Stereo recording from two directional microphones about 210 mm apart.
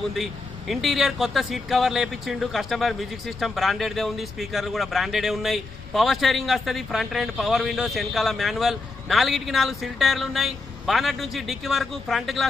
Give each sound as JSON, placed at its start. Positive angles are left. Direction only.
{"t": 0.1, "sound": "a man's voice", "side_deg": 0}